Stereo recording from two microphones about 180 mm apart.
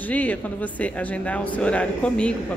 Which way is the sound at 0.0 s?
10° left (ahead or behind).